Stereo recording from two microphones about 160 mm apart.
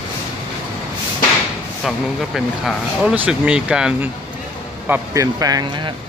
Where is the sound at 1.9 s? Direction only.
Centre (ahead or behind); by 5.7 s 25° right (ahead or behind).